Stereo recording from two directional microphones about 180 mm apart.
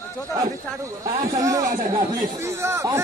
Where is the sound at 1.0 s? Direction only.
20° right (ahead or behind).